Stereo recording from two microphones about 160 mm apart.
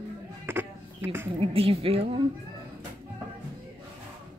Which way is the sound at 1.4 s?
35° right (ahead or behind).